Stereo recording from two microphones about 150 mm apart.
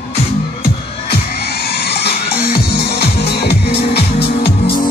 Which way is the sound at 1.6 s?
90° left.